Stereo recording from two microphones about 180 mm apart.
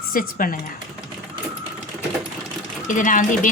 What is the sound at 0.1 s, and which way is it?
Speech, 50° left (ahead or behind).